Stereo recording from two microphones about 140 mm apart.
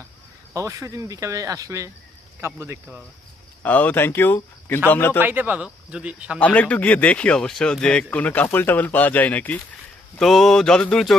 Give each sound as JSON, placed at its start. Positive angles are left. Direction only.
{"t": 0.5, "sound": "speech", "side_deg": -20}
{"t": 3.6, "sound": "speech", "side_deg": 10}
{"t": 5.2, "sound": "speech", "side_deg": -15}
{"t": 6.4, "sound": "speech", "side_deg": 10}